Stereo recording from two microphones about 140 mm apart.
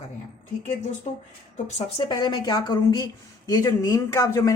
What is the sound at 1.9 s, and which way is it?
A woman's voice, 35° left (ahead or behind).